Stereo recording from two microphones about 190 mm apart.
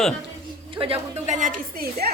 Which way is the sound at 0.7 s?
30° right (ahead or behind).